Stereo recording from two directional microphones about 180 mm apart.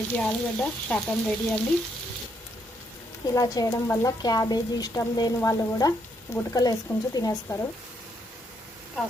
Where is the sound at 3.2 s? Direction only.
20° left (ahead or behind).